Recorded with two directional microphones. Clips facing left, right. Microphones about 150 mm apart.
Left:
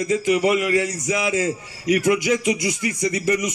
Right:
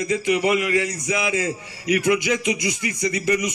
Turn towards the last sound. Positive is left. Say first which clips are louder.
# left 1 dB
turn(degrees=45)  # may be behind; listen again after turning